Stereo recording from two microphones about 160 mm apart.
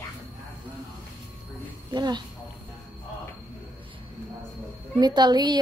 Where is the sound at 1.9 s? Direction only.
25° right (ahead or behind).